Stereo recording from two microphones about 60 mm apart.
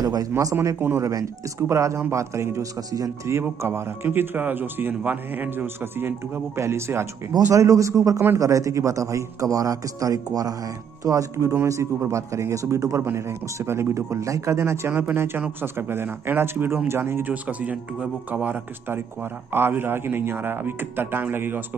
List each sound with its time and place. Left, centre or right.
0.0 s speech: right
0.7 s speech: right
1.0 s speech: right
7.5 s speech: right
11.1 s speech: right
11.5 s speech: right
13.0 s speech: right
14.9 s speech: right
17.2 s speech: right
19.5 s speech: right